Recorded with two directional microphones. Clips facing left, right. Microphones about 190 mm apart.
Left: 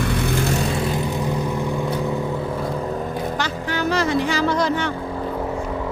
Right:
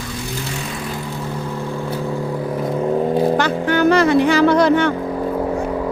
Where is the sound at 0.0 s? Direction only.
65° left (ahead or behind).